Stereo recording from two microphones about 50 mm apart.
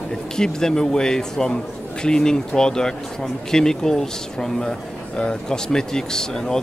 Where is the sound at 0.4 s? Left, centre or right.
Centre.